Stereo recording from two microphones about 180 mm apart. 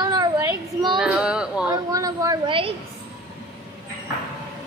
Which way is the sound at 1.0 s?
5° right (ahead or behind).